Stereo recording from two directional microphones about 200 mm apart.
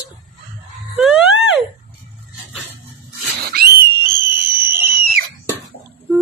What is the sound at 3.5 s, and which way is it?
Pig, 50° right (ahead or behind).